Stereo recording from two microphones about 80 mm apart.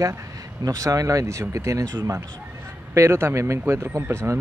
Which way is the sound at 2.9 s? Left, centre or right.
Right.